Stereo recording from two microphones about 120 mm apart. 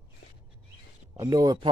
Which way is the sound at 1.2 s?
35° right (ahead or behind).